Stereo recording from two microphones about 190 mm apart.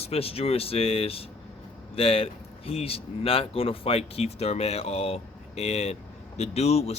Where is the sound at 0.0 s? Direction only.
30° left (ahead or behind).